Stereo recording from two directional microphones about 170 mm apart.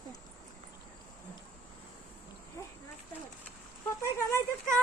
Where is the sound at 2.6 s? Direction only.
15° left (ahead or behind).